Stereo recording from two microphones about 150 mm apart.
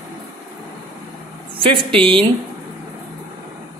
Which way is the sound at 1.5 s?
35° right (ahead or behind).